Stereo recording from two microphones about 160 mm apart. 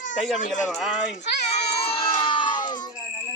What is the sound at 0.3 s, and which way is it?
Speech, 50° left (ahead or behind).